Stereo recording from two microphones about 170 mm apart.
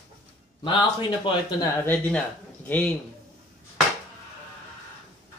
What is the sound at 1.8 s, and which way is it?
Speech, 10° left (ahead or behind).